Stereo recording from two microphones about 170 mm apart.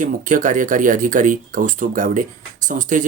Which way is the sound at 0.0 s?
50° right (ahead or behind).